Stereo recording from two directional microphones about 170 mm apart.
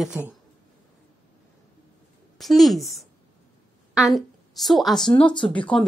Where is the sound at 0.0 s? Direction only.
5° right (ahead or behind).